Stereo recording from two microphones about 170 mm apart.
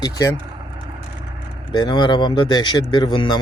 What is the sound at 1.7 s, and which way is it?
Speech, 25° left (ahead or behind).